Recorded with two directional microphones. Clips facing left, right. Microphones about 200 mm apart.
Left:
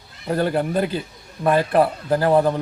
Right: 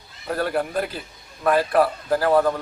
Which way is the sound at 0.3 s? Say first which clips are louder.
Left 3 dB; 25° left (ahead or behind).